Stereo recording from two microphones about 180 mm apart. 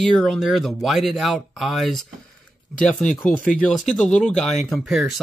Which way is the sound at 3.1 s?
5° left (ahead or behind).